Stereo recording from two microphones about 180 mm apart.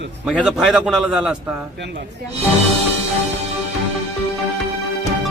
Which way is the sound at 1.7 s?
70° right (ahead or behind).